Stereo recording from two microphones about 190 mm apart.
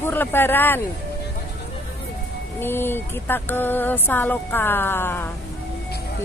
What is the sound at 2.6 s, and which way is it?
Speech, 10° left (ahead or behind).